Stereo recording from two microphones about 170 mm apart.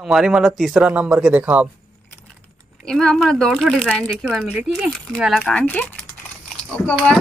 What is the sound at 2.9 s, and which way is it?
Speech, 5° left (ahead or behind).